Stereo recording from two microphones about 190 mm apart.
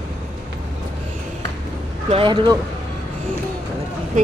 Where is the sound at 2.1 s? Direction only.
30° right (ahead or behind).